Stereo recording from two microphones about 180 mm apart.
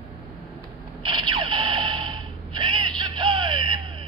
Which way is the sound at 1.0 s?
25° right (ahead or behind).